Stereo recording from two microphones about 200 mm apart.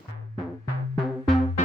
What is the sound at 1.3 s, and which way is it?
Music, 35° left (ahead or behind).